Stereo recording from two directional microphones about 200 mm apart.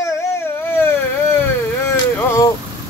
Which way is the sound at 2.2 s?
15° left (ahead or behind).